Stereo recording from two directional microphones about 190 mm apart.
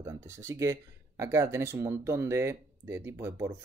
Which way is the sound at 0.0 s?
15° right (ahead or behind).